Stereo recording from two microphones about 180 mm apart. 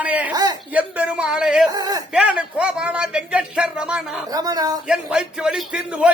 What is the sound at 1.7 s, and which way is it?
Speech, 20° right (ahead or behind).